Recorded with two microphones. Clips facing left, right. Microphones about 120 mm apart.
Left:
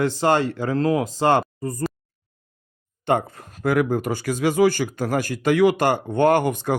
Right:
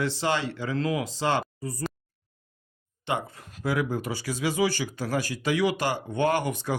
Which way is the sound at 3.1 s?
50° left (ahead or behind).